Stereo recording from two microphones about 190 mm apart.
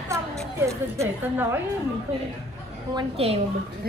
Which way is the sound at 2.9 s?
30° right (ahead or behind).